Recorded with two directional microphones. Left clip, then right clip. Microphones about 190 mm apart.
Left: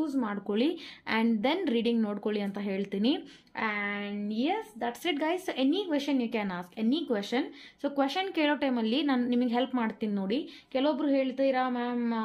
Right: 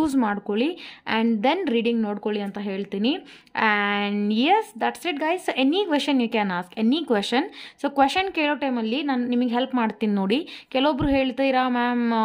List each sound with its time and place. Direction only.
0.0 s a sound: 45° right (ahead or behind)
0.3 s a woman's voice: 20° right (ahead or behind)
3.5 s a woman's voice: 35° right (ahead or behind)
5.2 s a woman's voice: 25° right (ahead or behind)